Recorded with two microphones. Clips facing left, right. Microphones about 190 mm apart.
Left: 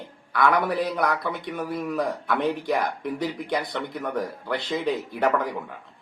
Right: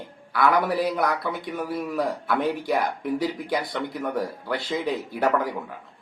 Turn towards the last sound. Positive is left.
turn(degrees=-5)  # may be behind; listen again after turning